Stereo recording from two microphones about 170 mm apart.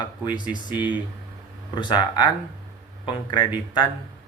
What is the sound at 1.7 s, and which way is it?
Speech, 25° left (ahead or behind).